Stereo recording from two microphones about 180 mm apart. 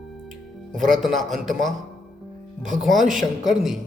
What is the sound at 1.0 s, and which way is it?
Speech, centre (ahead or behind).